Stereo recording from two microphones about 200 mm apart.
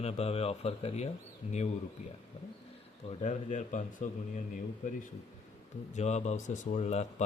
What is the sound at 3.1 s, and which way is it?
Speech, 35° left (ahead or behind).